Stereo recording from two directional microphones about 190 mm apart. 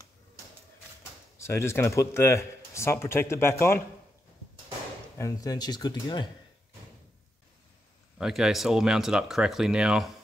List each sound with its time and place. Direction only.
1.4 s speech: 15° left (ahead or behind)
5.1 s speech: 15° left (ahead or behind)
8.2 s speech: centre (ahead or behind)